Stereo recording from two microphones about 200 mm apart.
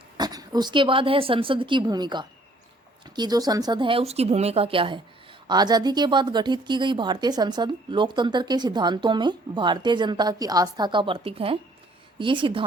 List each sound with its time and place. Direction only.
0.2 s speech: 20° right (ahead or behind)